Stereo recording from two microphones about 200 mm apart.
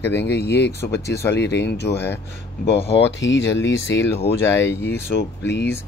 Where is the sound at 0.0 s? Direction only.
60° left (ahead or behind).